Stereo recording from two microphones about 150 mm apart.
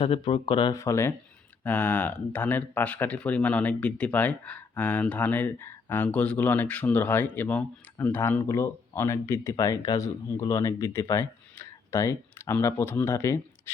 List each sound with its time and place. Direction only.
0.0 s speech: 40° left (ahead or behind)
0.7 s speech: 20° left (ahead or behind)